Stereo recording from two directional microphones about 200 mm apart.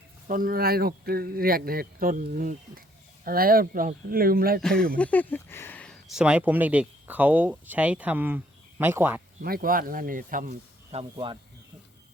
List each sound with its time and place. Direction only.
0.3 s speech: 45° right (ahead or behind)
4.6 s speech: 5° left (ahead or behind)
9.4 s speech: 45° right (ahead or behind)
10.9 s speech: 25° right (ahead or behind)